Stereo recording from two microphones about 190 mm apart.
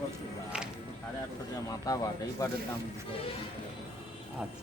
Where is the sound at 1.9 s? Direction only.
20° left (ahead or behind).